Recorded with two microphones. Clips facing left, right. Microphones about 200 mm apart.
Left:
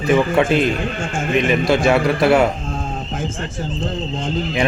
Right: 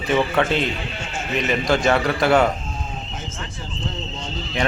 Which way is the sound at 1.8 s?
5° left (ahead or behind).